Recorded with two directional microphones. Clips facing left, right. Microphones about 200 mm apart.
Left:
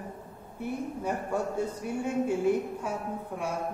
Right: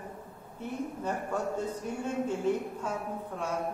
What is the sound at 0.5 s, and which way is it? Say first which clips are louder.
Speech: left 2 dB; 10° left (ahead or behind).